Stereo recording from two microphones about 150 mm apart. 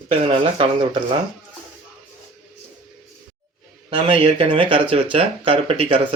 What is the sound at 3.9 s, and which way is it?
Speech, 35° right (ahead or behind).